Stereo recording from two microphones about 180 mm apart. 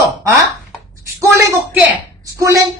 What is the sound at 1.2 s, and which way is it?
A woman's voice, 10° right (ahead or behind).